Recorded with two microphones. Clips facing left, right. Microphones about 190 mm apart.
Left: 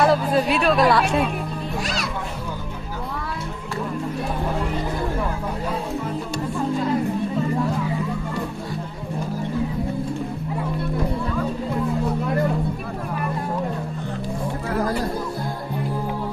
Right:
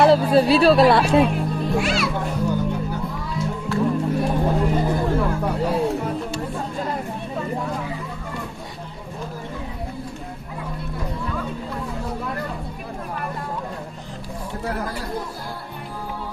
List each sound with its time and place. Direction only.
0.0 s speech: 30° right (ahead or behind)
1.8 s a child's voice: 40° left (ahead or behind)